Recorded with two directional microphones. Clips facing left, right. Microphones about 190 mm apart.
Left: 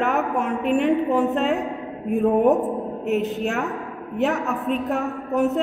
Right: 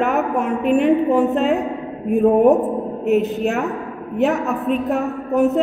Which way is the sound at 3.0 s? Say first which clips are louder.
Right 6 dB; 10° right (ahead or behind).